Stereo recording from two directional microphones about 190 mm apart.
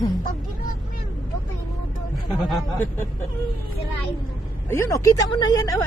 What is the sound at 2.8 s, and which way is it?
Speech, 15° left (ahead or behind).